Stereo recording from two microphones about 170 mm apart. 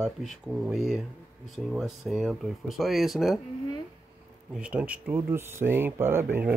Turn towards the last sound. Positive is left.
turn(degrees=-15)  # may be behind; listen again after turning